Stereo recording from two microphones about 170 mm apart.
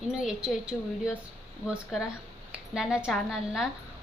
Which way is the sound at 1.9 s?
5° right (ahead or behind).